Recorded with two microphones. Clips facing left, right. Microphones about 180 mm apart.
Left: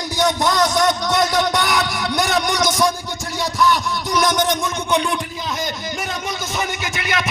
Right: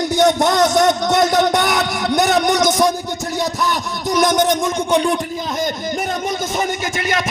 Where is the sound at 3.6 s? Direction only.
45° right (ahead or behind).